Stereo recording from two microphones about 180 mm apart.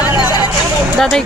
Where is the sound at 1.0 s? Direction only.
Centre (ahead or behind).